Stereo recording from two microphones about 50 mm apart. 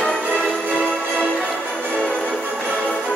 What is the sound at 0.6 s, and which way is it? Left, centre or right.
Music, left.